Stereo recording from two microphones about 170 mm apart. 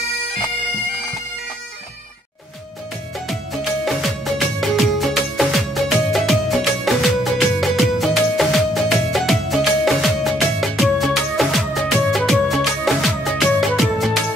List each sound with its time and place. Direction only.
4.6 s music: centre (ahead or behind)